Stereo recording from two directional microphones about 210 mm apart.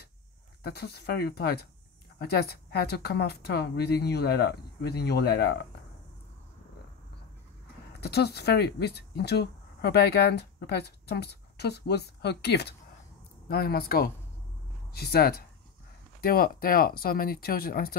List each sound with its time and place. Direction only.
0.7 s speech: 50° left (ahead or behind)
8.0 s speech: 50° left (ahead or behind)